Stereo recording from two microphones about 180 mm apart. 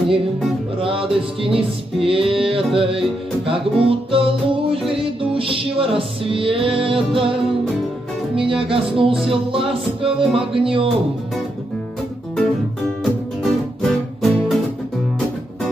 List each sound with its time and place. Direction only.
0.7 s music: 30° right (ahead or behind)
8.4 s music: 30° right (ahead or behind)
13.0 s music: centre (ahead or behind)